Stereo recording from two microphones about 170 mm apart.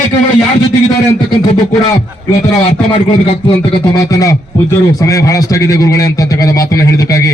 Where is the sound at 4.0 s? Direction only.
20° left (ahead or behind).